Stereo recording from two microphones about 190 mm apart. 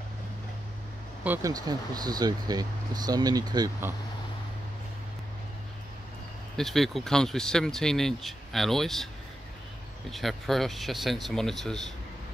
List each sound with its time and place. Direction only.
1.2 s speech: 15° right (ahead or behind)
6.5 s speech: centre (ahead or behind)
10.1 s speech: centre (ahead or behind)